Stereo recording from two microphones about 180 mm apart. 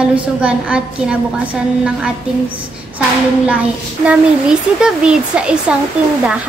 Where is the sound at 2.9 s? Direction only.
5° right (ahead or behind).